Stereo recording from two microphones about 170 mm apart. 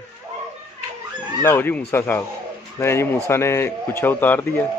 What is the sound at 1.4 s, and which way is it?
A man's voice, 15° left (ahead or behind).